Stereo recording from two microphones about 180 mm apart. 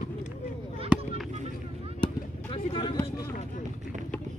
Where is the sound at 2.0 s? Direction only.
30° left (ahead or behind).